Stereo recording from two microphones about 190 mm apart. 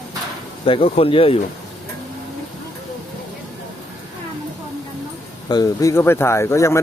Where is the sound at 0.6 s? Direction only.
30° left (ahead or behind).